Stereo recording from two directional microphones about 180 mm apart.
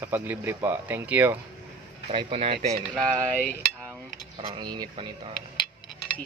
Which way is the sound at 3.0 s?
5° left (ahead or behind).